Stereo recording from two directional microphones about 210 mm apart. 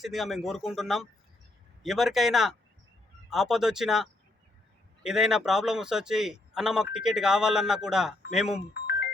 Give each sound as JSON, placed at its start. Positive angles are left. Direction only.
{"t": 0.0, "sound": "a man's voice", "side_deg": 0}
{"t": 8.7, "sound": "music", "side_deg": 50}